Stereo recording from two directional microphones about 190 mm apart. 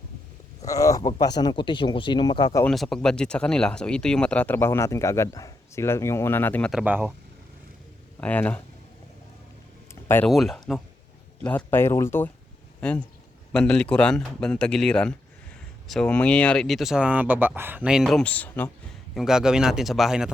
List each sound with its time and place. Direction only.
0.6 s speech: 15° left (ahead or behind)
2.6 s speech: centre (ahead or behind)
8.2 s speech: 10° left (ahead or behind)
9.9 s a sound: 10° left (ahead or behind)
10.2 s speech: centre (ahead or behind)
19.1 s speech: 5° right (ahead or behind)